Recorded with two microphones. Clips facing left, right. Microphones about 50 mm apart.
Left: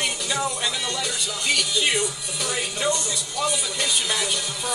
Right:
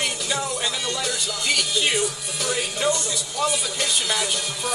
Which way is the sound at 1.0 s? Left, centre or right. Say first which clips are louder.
Right 1 dB; centre.